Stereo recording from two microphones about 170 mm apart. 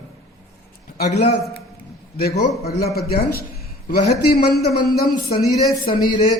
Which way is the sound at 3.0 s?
65° left (ahead or behind).